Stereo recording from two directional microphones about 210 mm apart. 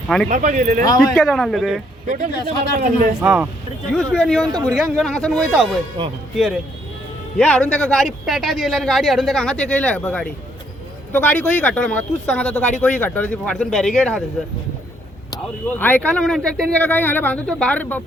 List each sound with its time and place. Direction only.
0.3 s speech: 35° right (ahead or behind)
0.9 s speech: centre (ahead or behind)
2.0 s speech: 35° right (ahead or behind)
3.2 s speech: 5° right (ahead or behind)
15.8 s speech: 5° left (ahead or behind)